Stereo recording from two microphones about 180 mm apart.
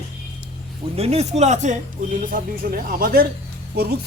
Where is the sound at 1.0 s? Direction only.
35° right (ahead or behind).